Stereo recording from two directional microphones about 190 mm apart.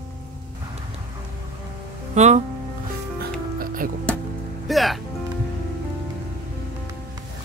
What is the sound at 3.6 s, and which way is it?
Music, 45° right (ahead or behind).